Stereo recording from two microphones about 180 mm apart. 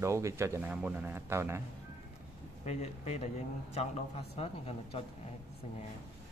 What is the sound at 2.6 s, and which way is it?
Speech, 35° left (ahead or behind).